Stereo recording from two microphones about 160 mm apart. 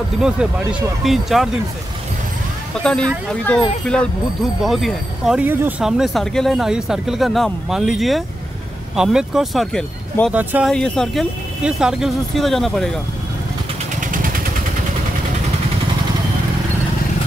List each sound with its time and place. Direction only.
0.2 s speech: 5° right (ahead or behind)
2.8 s speech: 5° left (ahead or behind)
10.3 s speech: 10° right (ahead or behind)
10.7 s speech: 5° left (ahead or behind)
13.9 s vehicle: 55° right (ahead or behind)